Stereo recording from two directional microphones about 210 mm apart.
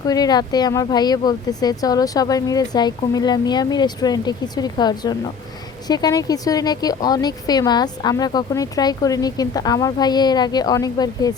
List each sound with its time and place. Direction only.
0.1 s speech: 20° left (ahead or behind)